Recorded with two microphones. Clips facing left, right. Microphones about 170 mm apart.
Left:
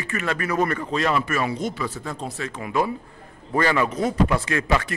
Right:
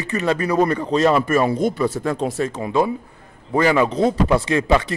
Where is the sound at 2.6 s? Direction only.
25° right (ahead or behind).